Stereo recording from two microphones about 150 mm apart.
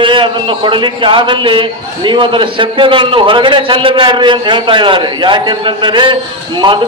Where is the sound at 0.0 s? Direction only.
35° right (ahead or behind).